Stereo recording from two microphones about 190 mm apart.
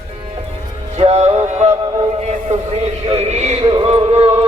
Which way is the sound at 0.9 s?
35° right (ahead or behind).